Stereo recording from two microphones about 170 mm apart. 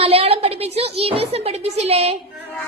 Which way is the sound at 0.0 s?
35° right (ahead or behind).